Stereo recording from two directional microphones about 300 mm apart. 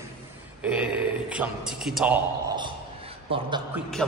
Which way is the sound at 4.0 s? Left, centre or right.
Centre.